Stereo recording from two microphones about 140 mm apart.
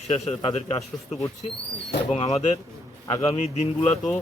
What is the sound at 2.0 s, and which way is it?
A man's voice, 50° left (ahead or behind).